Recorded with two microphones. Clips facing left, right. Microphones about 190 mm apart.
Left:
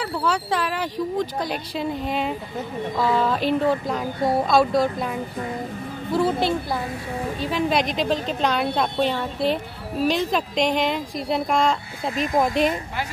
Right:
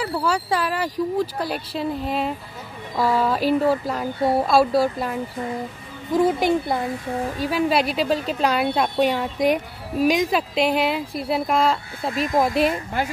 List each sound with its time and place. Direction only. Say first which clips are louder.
0.0 s speech: right 1 dB; 5° right (ahead or behind)
6.1 s speech: right 3 dB; 15° right (ahead or behind)